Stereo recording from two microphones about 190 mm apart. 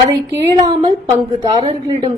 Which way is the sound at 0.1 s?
20° right (ahead or behind).